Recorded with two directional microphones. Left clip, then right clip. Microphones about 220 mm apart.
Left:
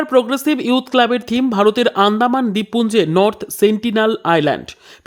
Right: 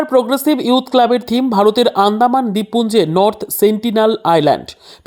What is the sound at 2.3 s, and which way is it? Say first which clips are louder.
Speech: right 3 dB; 25° left (ahead or behind).